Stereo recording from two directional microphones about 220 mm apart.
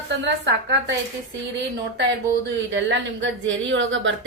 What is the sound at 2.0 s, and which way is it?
Speech, 50° right (ahead or behind).